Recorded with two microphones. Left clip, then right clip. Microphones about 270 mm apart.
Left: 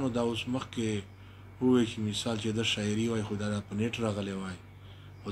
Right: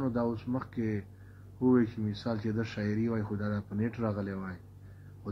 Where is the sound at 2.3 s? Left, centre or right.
Left.